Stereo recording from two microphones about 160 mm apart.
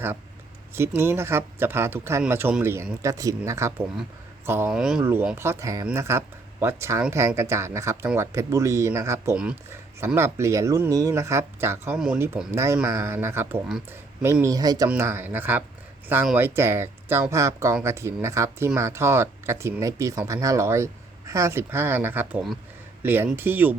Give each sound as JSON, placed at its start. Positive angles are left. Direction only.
{"t": 0.8, "sound": "speech", "side_deg": -15}
{"t": 9.3, "sound": "speech", "side_deg": -5}
{"t": 11.9, "sound": "speech", "side_deg": -5}
{"t": 12.5, "sound": "speech", "side_deg": -15}